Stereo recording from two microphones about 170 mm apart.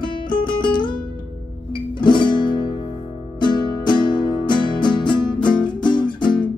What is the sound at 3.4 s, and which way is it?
Music, 25° left (ahead or behind).